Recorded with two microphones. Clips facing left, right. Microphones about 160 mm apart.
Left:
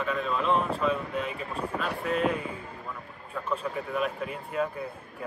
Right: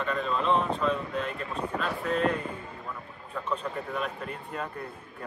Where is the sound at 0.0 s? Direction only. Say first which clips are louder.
Even; centre (ahead or behind).